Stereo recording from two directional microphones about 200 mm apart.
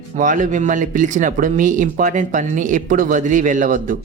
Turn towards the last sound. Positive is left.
turn(degrees=-40)  # may be behind; listen again after turning